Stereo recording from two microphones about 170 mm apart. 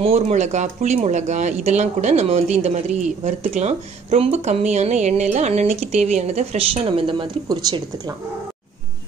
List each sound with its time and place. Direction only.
0.0 s speech: 40° right (ahead or behind)